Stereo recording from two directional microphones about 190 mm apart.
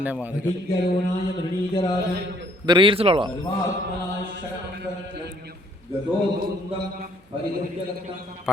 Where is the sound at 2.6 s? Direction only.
25° right (ahead or behind).